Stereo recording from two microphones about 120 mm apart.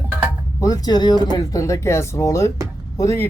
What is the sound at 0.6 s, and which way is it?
A man's voice, 30° left (ahead or behind).